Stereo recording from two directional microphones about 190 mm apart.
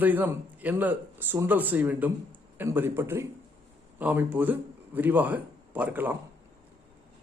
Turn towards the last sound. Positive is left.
turn(degrees=-10)  # may be behind; listen again after turning